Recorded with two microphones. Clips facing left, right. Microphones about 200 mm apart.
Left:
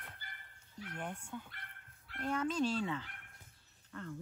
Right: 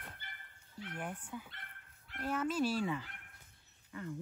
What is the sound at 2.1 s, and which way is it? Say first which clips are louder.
Speech: even; 5° right (ahead or behind).